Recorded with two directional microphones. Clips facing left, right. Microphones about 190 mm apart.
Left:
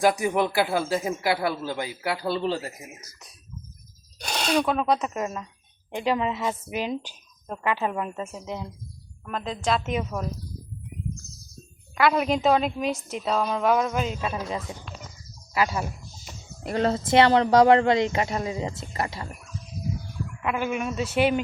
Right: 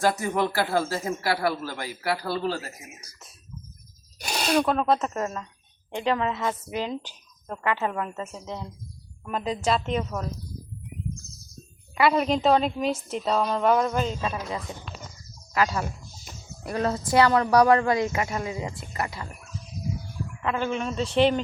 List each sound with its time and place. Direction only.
0.0 s speech: 15° left (ahead or behind)
4.2 s a woman's voice: 5° right (ahead or behind); by 8.6 s 10° left (ahead or behind)
9.2 s a woman's voice: 5° right (ahead or behind)
11.9 s a woman's voice: centre (ahead or behind)
16.6 s speech: 30° left (ahead or behind)
20.4 s speech: 15° left (ahead or behind)